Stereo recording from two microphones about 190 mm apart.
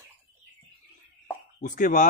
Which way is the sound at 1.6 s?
45° left (ahead or behind).